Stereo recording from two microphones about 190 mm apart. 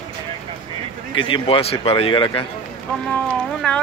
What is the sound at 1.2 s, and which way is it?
Speech, 30° left (ahead or behind).